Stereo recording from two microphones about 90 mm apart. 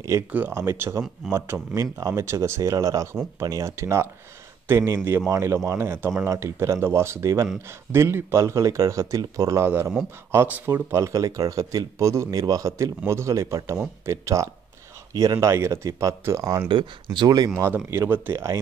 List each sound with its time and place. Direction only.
0.5 s speech: 30° right (ahead or behind)
9.7 s speech: 25° right (ahead or behind); by 15.5 s 45° right (ahead or behind)
15.5 s speech: 30° right (ahead or behind)
16.6 s speech: 60° right (ahead or behind)
17.8 s speech: 25° right (ahead or behind)